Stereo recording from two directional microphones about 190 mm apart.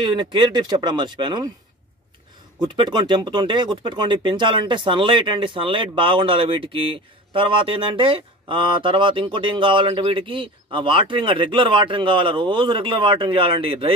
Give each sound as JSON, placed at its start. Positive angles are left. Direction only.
{"t": 0.0, "sound": "speech", "side_deg": -25}
{"t": 2.6, "sound": "speech", "side_deg": -25}